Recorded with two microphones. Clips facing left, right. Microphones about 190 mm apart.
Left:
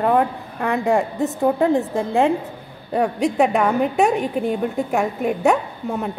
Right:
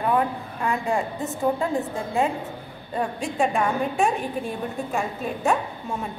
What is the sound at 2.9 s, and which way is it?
A woman's voice, 65° left (ahead or behind).